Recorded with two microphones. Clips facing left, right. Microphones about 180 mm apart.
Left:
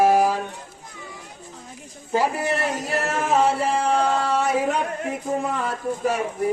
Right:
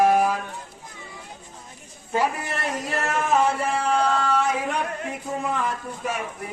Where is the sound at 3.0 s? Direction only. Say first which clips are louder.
Left 1 dB; 35° left (ahead or behind).